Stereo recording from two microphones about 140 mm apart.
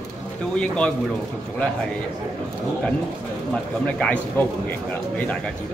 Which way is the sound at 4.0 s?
10° left (ahead or behind).